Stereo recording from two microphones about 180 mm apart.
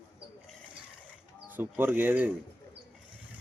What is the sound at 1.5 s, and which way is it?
Speech, 10° right (ahead or behind).